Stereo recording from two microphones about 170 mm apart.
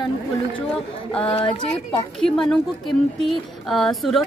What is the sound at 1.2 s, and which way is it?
Speech, 35° left (ahead or behind).